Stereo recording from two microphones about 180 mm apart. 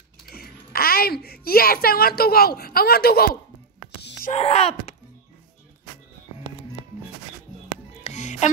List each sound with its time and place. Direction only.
0.3 s a woman's voice: 55° left (ahead or behind)
4.3 s speech: 35° left (ahead or behind)
8.0 s music: 40° left (ahead or behind)